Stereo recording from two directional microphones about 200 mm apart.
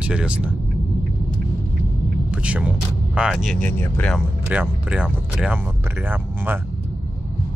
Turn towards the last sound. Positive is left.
turn(degrees=-10)  # may be behind; listen again after turning